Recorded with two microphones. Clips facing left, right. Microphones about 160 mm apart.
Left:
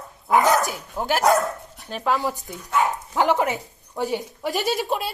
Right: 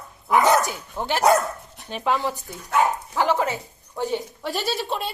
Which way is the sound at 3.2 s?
15° left (ahead or behind).